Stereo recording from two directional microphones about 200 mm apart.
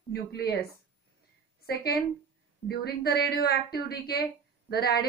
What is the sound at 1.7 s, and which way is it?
A woman's voice, 50° left (ahead or behind).